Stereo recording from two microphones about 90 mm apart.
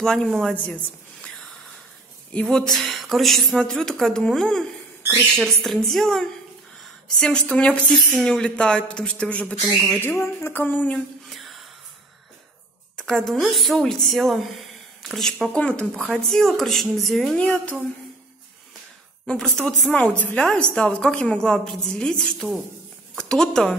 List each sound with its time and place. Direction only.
0.0 s a woman's voice: 5° left (ahead or behind)
1.2 s a sound: 5° left (ahead or behind)
2.3 s a woman's voice: 5° left (ahead or behind)
9.9 s speech: 25° left (ahead or behind)
11.2 s a sound: centre (ahead or behind)
12.9 s a woman's voice: 5° left (ahead or behind)
17.4 s a woman's voice: 15° left (ahead or behind)
19.2 s a woman's voice: 5° left (ahead or behind)
19.9 s a woman's voice: 15° left (ahead or behind)